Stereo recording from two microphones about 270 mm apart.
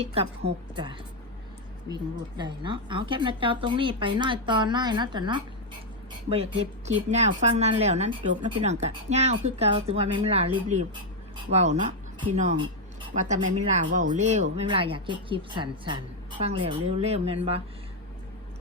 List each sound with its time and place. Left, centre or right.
0.0 s a woman's voice: right
2.4 s a woman's voice: centre